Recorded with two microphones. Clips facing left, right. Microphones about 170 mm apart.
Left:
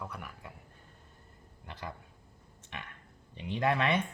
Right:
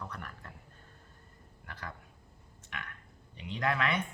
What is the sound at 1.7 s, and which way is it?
Speech, 20° left (ahead or behind).